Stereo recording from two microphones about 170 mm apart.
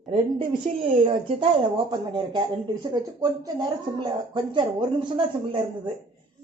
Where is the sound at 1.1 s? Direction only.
30° right (ahead or behind).